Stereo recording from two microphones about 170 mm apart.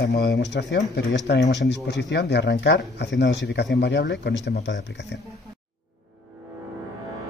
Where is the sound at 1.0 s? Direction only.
75° left (ahead or behind); by 5.1 s 90° left.